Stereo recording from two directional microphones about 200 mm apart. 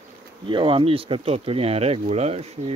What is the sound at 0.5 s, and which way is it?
Speech, 25° right (ahead or behind).